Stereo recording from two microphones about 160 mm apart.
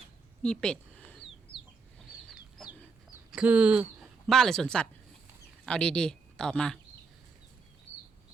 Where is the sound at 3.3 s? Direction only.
5° right (ahead or behind).